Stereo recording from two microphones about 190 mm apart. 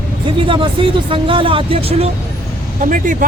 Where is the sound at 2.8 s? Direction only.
45° right (ahead or behind).